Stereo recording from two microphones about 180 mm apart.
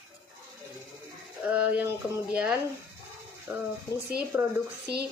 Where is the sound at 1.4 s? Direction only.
10° right (ahead or behind).